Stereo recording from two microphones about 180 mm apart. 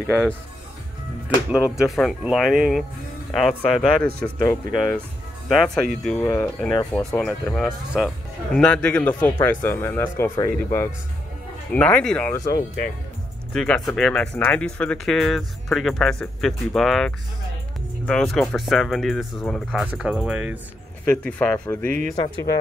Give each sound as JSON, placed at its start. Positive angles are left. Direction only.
{"t": 1.5, "sound": "speech", "side_deg": 0}
{"t": 4.5, "sound": "speech", "side_deg": 15}
{"t": 5.5, "sound": "speech", "side_deg": 0}
{"t": 12.3, "sound": "speech", "side_deg": 20}
{"t": 12.5, "sound": "speech", "side_deg": 50}
{"t": 13.5, "sound": "speech", "side_deg": 5}
{"t": 21.1, "sound": "speech", "side_deg": 5}
{"t": 21.8, "sound": "speech", "side_deg": -50}
{"t": 22.1, "sound": "speech", "side_deg": 20}